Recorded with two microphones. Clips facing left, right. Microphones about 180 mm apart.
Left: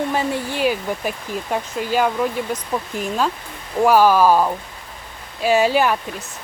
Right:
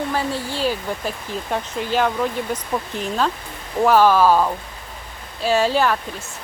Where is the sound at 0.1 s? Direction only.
15° left (ahead or behind).